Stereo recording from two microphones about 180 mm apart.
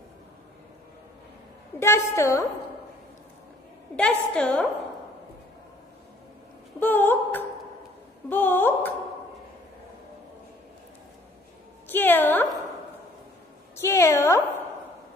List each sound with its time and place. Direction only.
1.8 s a woman's voice: 15° left (ahead or behind)
3.9 s a woman's voice: 5° left (ahead or behind)
6.8 s a sound: 10° left (ahead or behind)
8.3 s a woman's voice: 10° left (ahead or behind)
11.9 s a woman's voice: 10° left (ahead or behind)
13.7 s a woman's voice: 15° left (ahead or behind)